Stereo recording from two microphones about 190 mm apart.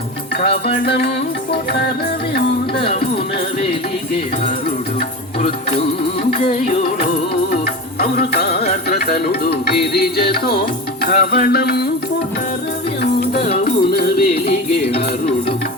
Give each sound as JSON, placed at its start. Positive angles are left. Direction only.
{"t": 0.9, "sound": "music", "side_deg": 55}
{"t": 2.7, "sound": "speech", "side_deg": 30}
{"t": 6.3, "sound": "music", "side_deg": 35}
{"t": 8.1, "sound": "music", "side_deg": 50}
{"t": 13.4, "sound": "music", "side_deg": 35}
{"t": 13.9, "sound": "music", "side_deg": 55}